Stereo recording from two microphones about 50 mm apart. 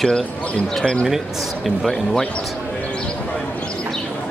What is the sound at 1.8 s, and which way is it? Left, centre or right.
Speech, centre.